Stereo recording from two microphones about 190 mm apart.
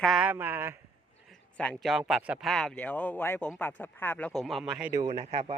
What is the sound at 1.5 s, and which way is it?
Speech, 5° left (ahead or behind).